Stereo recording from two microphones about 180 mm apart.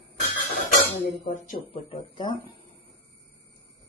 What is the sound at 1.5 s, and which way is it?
Speech, 30° left (ahead or behind).